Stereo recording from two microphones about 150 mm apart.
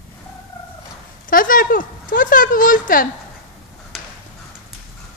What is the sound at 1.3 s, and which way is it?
Speech, 70° left (ahead or behind).